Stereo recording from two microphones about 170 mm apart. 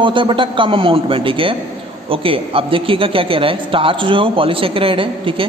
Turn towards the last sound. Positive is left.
turn(degrees=-30)  # may be behind; listen again after turning